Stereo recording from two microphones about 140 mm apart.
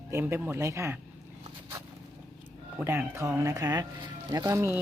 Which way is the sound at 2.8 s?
15° right (ahead or behind).